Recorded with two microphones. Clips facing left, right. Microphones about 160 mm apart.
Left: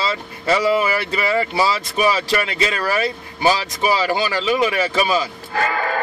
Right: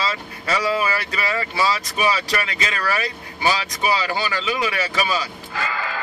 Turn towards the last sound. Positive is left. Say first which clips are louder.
# left 7 dB
turn(degrees=55)  # may be behind; listen again after turning